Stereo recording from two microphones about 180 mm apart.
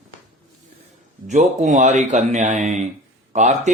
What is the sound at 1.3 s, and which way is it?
Speech, 40° right (ahead or behind).